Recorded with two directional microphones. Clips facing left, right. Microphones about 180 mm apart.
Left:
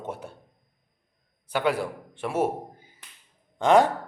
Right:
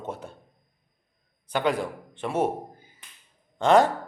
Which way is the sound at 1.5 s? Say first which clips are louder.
Even; 10° left (ahead or behind).